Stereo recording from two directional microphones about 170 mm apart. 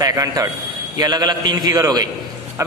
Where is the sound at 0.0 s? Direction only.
20° right (ahead or behind).